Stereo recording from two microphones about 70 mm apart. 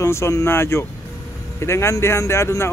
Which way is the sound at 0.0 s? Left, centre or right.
Left.